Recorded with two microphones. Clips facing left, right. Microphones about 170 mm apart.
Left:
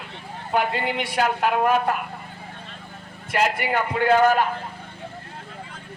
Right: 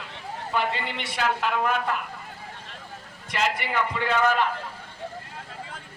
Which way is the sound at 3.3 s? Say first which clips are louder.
Left 4 dB; 50° left (ahead or behind).